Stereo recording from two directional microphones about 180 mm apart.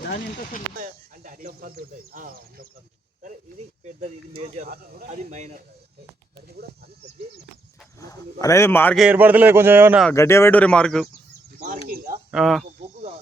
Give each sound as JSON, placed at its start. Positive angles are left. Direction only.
{"t": 0.0, "sound": "speech", "side_deg": 55}
{"t": 0.8, "sound": "a sound", "side_deg": -50}
{"t": 2.1, "sound": "speech", "side_deg": -50}
{"t": 3.8, "sound": "speech", "side_deg": -40}
{"t": 7.9, "sound": "speech", "side_deg": 20}
{"t": 9.0, "sound": "speech", "side_deg": -10}
{"t": 10.2, "sound": "speech", "side_deg": 15}
{"t": 12.3, "sound": "speech", "side_deg": 0}